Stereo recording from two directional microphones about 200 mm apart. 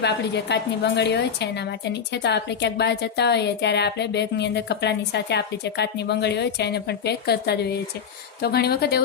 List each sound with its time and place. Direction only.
0.0 s a woman's voice: 60° left (ahead or behind)